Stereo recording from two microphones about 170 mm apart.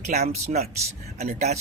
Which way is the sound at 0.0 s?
40° right (ahead or behind).